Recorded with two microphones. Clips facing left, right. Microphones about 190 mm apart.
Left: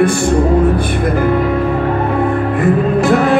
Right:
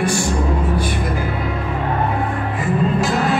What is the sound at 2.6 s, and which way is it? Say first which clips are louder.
Music: left 6 dB; 60° left (ahead or behind).